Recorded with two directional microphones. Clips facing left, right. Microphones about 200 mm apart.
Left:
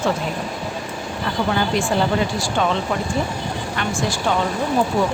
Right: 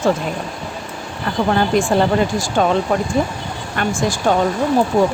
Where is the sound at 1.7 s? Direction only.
45° right (ahead or behind).